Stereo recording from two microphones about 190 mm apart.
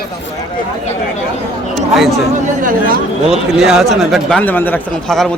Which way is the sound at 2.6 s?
45° right (ahead or behind).